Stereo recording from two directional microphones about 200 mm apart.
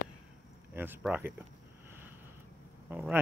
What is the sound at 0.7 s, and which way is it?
Speech, 10° right (ahead or behind).